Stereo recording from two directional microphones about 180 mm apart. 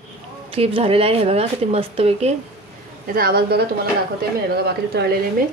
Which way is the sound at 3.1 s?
60° right (ahead or behind).